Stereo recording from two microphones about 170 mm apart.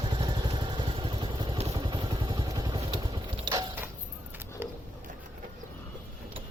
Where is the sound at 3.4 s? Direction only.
25° right (ahead or behind).